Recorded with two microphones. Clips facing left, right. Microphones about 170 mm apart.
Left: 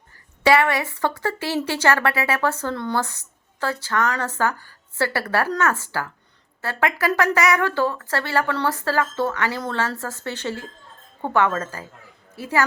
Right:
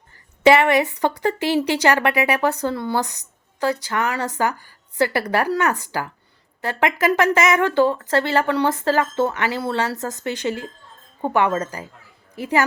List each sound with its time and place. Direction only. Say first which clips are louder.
0.4 s a woman's voice: right 4 dB; 20° right (ahead or behind)